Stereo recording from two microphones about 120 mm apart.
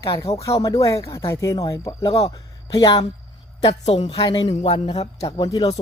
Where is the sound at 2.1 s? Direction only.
55° left (ahead or behind).